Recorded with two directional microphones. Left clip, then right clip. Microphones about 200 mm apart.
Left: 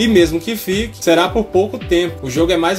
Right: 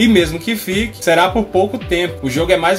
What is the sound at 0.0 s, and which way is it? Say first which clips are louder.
Speech: left 1 dB; 20° left (ahead or behind).